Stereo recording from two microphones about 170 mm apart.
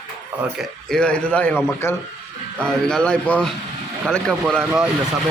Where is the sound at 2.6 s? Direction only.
5° left (ahead or behind).